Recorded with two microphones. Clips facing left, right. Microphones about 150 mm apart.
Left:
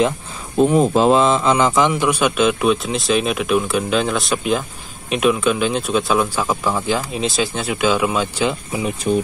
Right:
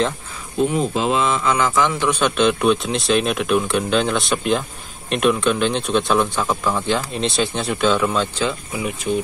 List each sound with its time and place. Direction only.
0.6 s a man's voice: 45° left (ahead or behind); by 8.5 s 10° left (ahead or behind)
8.7 s speech: 30° left (ahead or behind)